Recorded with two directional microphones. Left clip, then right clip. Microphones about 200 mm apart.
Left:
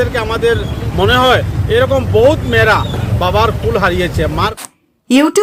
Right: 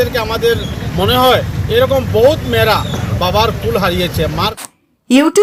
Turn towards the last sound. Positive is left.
turn(degrees=0)  # may be behind; listen again after turning